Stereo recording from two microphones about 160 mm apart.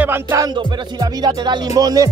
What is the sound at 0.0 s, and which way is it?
Music, 15° right (ahead or behind).